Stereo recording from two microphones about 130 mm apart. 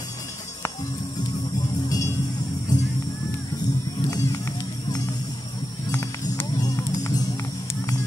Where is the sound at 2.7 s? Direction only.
30° left (ahead or behind).